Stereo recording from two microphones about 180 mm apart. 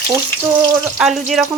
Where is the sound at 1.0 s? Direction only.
Centre (ahead or behind).